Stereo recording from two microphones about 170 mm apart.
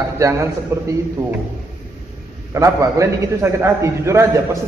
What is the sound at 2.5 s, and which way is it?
A man's voice, 20° right (ahead or behind).